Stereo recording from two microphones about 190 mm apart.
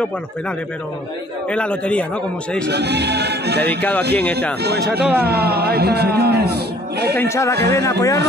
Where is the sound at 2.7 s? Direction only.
60° right (ahead or behind).